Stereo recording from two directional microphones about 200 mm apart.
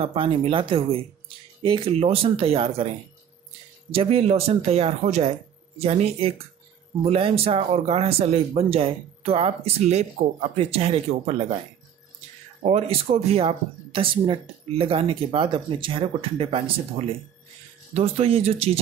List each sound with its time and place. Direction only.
0.0 s speech: 25° right (ahead or behind)
3.9 s speech: 30° right (ahead or behind)
12.6 s speech: 30° right (ahead or behind)